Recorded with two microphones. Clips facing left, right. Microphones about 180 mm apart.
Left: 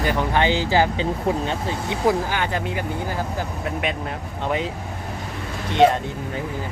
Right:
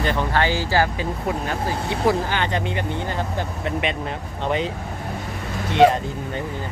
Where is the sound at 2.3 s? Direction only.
5° left (ahead or behind).